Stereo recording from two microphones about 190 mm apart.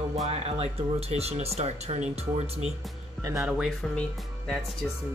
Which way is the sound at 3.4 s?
Centre (ahead or behind).